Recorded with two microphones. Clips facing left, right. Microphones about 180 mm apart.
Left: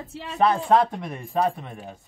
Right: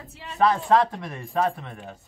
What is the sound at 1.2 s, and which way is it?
Speech, 10° left (ahead or behind).